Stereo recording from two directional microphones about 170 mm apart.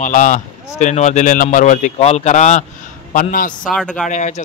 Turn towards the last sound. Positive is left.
turn(degrees=45)  # may be behind; listen again after turning